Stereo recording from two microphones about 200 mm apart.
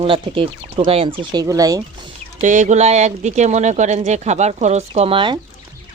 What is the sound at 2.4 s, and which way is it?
Speech, 40° right (ahead or behind).